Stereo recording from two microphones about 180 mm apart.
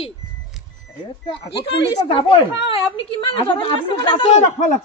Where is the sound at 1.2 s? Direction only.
30° left (ahead or behind).